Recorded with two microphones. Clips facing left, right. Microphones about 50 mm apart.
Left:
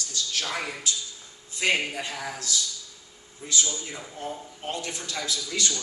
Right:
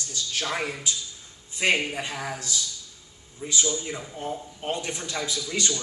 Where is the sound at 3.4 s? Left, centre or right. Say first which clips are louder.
Right 2 dB; centre.